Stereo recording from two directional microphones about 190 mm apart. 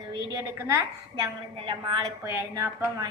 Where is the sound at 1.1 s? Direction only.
25° right (ahead or behind).